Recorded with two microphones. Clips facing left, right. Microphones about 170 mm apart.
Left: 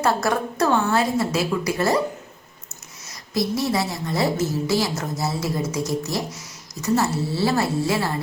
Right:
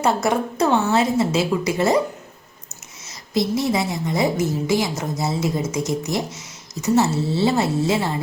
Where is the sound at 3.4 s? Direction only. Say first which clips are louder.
Right 2 dB; 20° right (ahead or behind).